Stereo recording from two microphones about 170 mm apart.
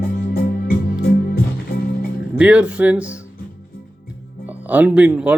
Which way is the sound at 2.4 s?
5° right (ahead or behind).